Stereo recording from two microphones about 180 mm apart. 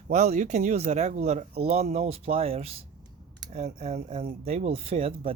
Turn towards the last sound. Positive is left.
turn(degrees=-30)  # may be behind; listen again after turning